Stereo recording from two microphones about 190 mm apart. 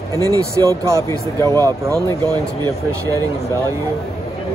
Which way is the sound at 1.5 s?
20° right (ahead or behind).